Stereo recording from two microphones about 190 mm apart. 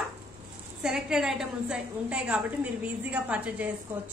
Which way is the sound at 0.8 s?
5° right (ahead or behind).